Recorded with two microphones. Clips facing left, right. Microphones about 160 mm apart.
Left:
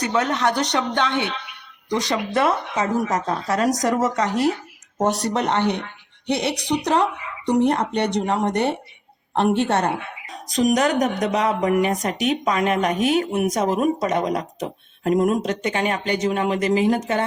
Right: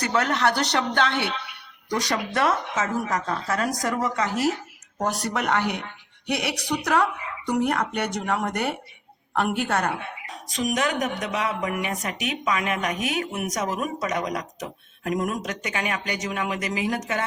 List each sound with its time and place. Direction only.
0.0 s speech: 15° left (ahead or behind); by 2.9 s 35° left (ahead or behind)
3.1 s speech: 20° left (ahead or behind)
4.0 s speech: 40° left (ahead or behind)
4.3 s speech: 5° right (ahead or behind)
5.3 s speech: 25° left (ahead or behind)